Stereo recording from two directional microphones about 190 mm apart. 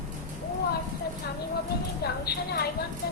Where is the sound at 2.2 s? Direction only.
55° left (ahead or behind).